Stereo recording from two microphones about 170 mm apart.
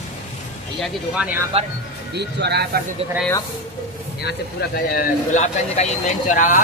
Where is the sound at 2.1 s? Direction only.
75° right (ahead or behind).